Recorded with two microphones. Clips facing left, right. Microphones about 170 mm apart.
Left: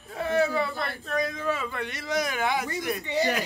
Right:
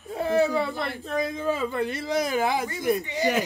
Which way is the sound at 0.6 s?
25° right (ahead or behind).